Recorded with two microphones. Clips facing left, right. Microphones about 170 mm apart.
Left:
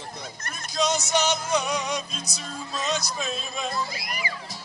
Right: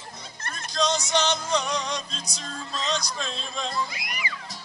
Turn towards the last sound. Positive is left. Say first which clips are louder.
# left 2 dB
turn(degrees=35)  # may be behind; listen again after turning